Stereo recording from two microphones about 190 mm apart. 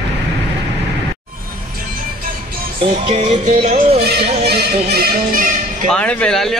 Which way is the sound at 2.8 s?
30° right (ahead or behind).